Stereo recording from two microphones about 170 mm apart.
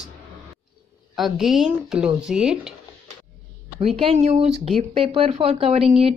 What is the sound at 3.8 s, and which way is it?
Speech, 35° right (ahead or behind).